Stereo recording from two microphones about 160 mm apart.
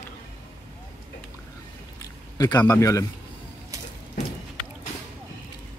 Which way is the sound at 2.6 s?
15° left (ahead or behind).